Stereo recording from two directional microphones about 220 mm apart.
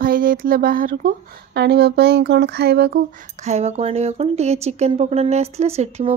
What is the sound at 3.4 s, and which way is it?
Speech, 30° right (ahead or behind).